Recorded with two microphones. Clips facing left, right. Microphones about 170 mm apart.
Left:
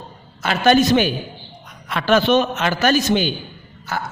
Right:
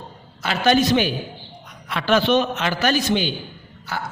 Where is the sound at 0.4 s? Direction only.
50° left (ahead or behind).